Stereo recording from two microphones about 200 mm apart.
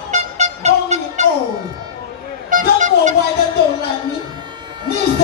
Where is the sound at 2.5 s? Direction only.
40° right (ahead or behind).